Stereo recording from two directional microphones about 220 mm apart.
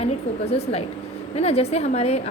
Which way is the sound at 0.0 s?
30° left (ahead or behind).